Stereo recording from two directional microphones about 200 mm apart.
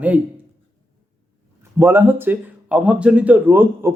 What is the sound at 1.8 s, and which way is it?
A man's voice, 10° right (ahead or behind).